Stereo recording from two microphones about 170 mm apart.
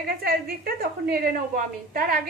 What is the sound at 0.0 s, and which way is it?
A woman's voice, 60° right (ahead or behind).